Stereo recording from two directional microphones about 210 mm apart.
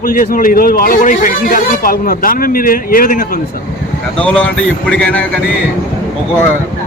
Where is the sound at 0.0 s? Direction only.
45° left (ahead or behind).